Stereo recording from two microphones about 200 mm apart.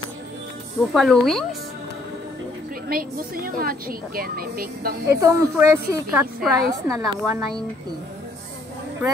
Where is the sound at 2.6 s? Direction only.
45° right (ahead or behind).